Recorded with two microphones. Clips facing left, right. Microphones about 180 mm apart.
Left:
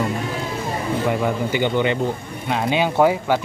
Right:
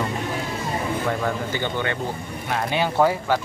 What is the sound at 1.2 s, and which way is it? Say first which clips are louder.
Speech: left 5 dB; 15° left (ahead or behind).